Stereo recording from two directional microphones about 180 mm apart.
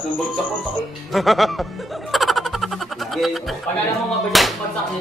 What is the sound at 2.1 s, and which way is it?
Snicker, centre (ahead or behind).